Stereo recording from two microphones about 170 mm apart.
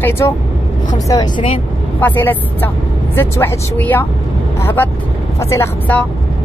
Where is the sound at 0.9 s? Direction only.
25° left (ahead or behind).